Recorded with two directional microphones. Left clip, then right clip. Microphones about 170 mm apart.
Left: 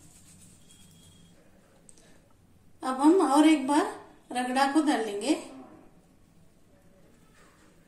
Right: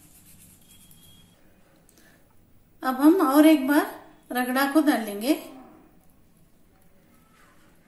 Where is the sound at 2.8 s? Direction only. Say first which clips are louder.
Right 3 dB; 40° right (ahead or behind).